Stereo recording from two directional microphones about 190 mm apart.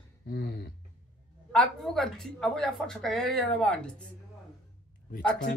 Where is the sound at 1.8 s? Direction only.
Centre (ahead or behind).